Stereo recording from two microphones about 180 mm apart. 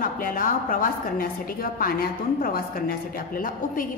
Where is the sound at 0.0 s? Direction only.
50° left (ahead or behind).